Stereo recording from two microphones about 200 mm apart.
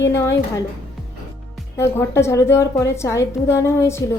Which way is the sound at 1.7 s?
15° left (ahead or behind).